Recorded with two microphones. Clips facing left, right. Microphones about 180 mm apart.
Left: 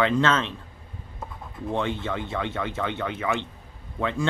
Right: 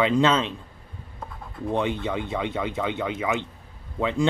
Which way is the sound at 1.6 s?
15° right (ahead or behind).